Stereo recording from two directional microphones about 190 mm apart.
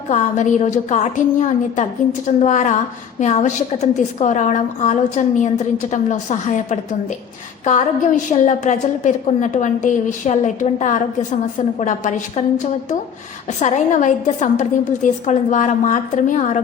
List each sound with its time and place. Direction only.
0.1 s a woman's voice: 40° left (ahead or behind)
13.6 s a woman's voice: 40° left (ahead or behind)